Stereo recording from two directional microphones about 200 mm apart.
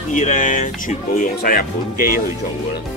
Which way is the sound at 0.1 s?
40° left (ahead or behind).